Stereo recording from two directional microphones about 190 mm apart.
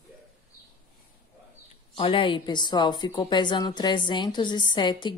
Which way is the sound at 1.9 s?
25° left (ahead or behind).